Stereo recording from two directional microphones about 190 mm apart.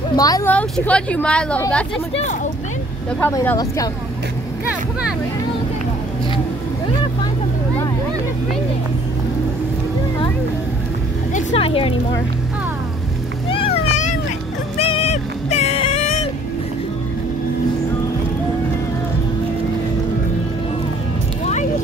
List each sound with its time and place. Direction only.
0.1 s speech: 20° left (ahead or behind)
0.5 s a woman's voice: 5° left (ahead or behind)
3.2 s a woman's voice: 10° left (ahead or behind)
11.3 s a woman's voice: 30° left (ahead or behind)
13.5 s cat: 30° left (ahead or behind)
14.8 s music: 30° left (ahead or behind)